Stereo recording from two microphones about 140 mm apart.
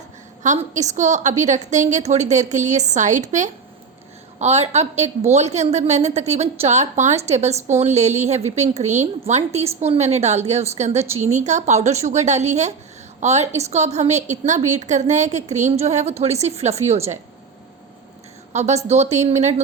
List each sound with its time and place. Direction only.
0.4 s a woman's voice: 60° right (ahead or behind)
4.4 s a woman's voice: 50° right (ahead or behind)
18.5 s a woman's voice: 55° right (ahead or behind)